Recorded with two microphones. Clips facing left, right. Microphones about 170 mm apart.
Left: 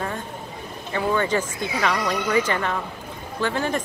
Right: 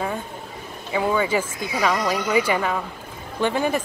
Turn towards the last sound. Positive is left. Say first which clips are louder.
# right 2 dB
turn(degrees=-15)  # may be behind; listen again after turning